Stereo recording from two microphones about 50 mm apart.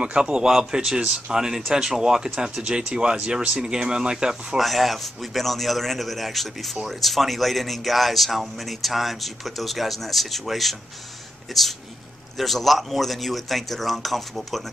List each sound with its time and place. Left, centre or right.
0.0 s speech: centre
4.6 s speech: centre